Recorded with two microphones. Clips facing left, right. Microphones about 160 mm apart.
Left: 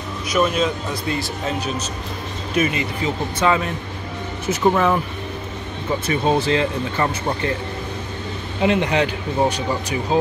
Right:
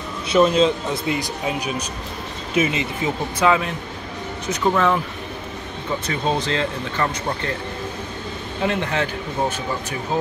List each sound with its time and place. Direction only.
0.3 s speech: 30° right (ahead or behind)
1.0 s speech: 15° right (ahead or behind)
2.5 s speech: 20° right (ahead or behind)
3.3 s speech: centre (ahead or behind)
4.5 s speech: 10° left (ahead or behind)
6.0 s speech: 10° left (ahead or behind)
8.6 s speech: 15° left (ahead or behind)